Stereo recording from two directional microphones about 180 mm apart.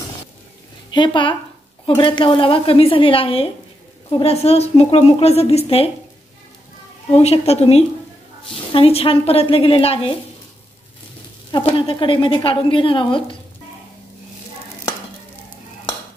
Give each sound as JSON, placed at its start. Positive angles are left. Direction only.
{"t": 0.9, "sound": "a woman's voice", "side_deg": 25}
{"t": 7.1, "sound": "a woman's voice", "side_deg": 35}
{"t": 11.5, "sound": "a woman's voice", "side_deg": 30}